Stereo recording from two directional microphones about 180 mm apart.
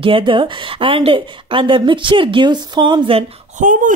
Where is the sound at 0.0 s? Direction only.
30° right (ahead or behind).